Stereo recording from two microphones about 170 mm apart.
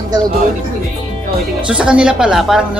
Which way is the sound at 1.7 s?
5° right (ahead or behind).